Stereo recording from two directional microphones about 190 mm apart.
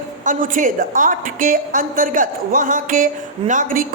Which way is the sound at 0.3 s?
45° right (ahead or behind).